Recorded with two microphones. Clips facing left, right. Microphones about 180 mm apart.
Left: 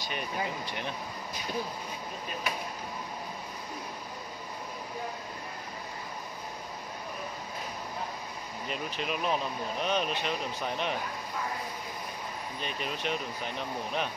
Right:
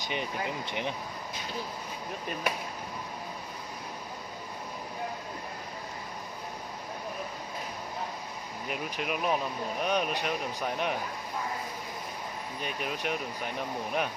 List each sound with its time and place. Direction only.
0.0 s speech: 20° right (ahead or behind)
8.6 s speech: 10° right (ahead or behind)
12.5 s speech: 10° right (ahead or behind)